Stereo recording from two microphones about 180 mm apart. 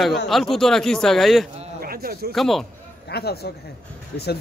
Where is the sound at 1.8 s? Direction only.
55° right (ahead or behind).